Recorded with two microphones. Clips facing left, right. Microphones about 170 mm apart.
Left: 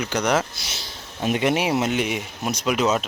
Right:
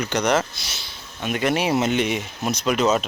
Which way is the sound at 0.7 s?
35° left (ahead or behind).